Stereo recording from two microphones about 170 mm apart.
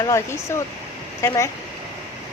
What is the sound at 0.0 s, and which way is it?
Speech, 20° left (ahead or behind).